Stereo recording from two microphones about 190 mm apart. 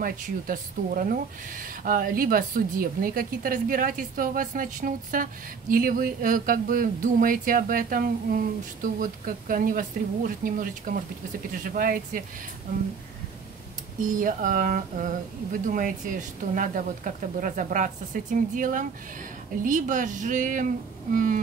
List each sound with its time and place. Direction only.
0.0 s speech: 45° right (ahead or behind)
14.0 s speech: 45° right (ahead or behind)